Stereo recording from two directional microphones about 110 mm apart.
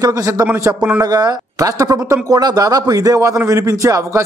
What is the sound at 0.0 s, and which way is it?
A man's voice, 30° right (ahead or behind).